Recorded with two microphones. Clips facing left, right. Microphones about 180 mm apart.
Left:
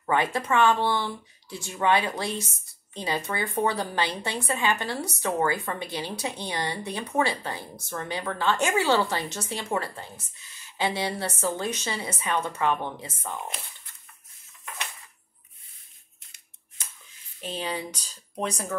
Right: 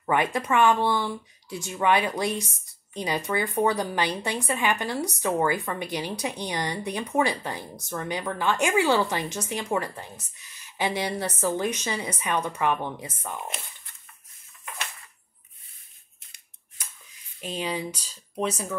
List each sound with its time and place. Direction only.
0.0 s a woman's voice: 15° right (ahead or behind)
17.4 s a woman's voice: 10° right (ahead or behind)